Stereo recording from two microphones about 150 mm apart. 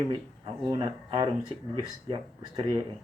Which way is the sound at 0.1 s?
30° right (ahead or behind).